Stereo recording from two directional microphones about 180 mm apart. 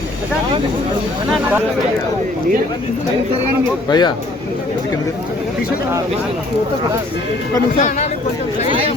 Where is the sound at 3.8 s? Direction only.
25° left (ahead or behind).